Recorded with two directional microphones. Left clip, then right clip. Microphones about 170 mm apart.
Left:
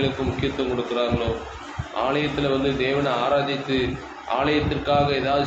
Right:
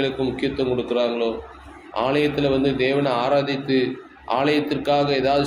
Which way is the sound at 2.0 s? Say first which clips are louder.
Right 3 dB; 55° right (ahead or behind).